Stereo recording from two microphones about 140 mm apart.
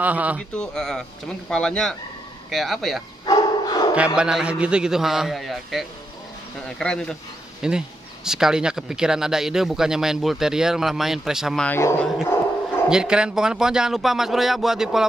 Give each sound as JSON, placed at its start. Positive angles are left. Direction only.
{"t": 0.0, "sound": "a man's voice", "side_deg": -10}
{"t": 0.6, "sound": "speech", "side_deg": 5}
{"t": 3.3, "sound": "bow-wow", "side_deg": 30}
{"t": 3.9, "sound": "speech", "side_deg": -10}
{"t": 7.6, "sound": "speech", "side_deg": -5}
{"t": 11.6, "sound": "speech", "side_deg": 10}
{"t": 12.9, "sound": "speech", "side_deg": -5}